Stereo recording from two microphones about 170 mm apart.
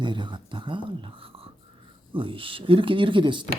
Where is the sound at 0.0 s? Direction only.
30° right (ahead or behind).